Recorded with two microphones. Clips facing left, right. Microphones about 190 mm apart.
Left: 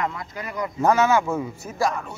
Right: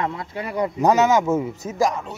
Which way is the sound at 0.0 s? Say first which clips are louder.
Right 2 dB; 30° right (ahead or behind).